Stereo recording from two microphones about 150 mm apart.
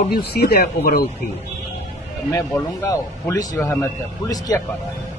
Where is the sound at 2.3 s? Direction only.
20° left (ahead or behind).